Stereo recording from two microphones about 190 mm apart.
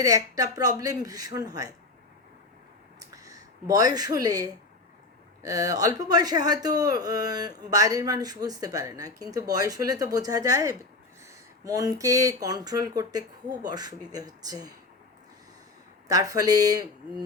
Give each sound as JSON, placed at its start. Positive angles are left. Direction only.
{"t": 0.0, "sound": "speech", "side_deg": -20}
{"t": 3.0, "sound": "a sound", "side_deg": -20}
{"t": 5.4, "sound": "speech", "side_deg": -20}
{"t": 16.0, "sound": "speech", "side_deg": -20}